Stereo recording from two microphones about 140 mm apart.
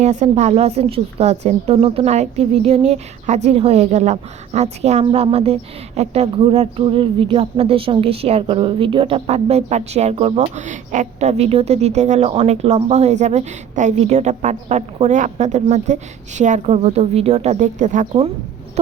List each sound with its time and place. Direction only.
0.0 s a woman's voice: 55° right (ahead or behind)